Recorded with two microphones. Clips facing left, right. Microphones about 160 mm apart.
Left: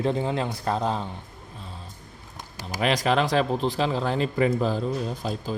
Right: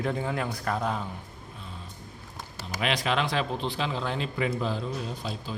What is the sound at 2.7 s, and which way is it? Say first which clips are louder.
A man's voice: left 5 dB; 40° left (ahead or behind).